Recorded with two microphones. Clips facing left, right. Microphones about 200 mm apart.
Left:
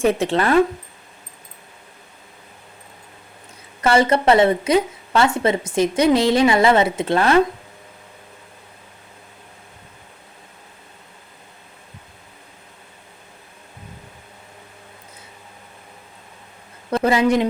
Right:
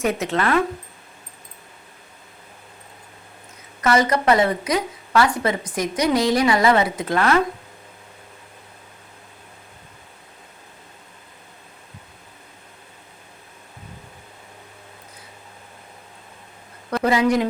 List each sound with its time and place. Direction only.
0.0 s a woman's voice: 30° left (ahead or behind)
3.8 s a woman's voice: 30° left (ahead or behind)
17.0 s a woman's voice: 25° left (ahead or behind)